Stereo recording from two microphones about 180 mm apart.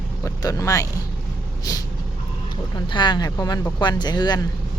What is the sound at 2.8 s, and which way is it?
Speech, 25° left (ahead or behind).